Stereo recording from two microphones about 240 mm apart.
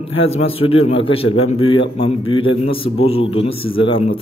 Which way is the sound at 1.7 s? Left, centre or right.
Left.